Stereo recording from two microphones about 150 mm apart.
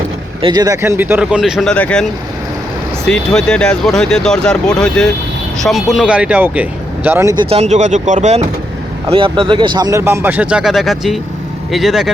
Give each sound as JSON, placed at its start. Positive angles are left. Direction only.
{"t": 0.4, "sound": "speech", "side_deg": -25}
{"t": 3.1, "sound": "speech", "side_deg": 5}
{"t": 7.3, "sound": "speech", "side_deg": -45}
{"t": 9.0, "sound": "speech", "side_deg": -35}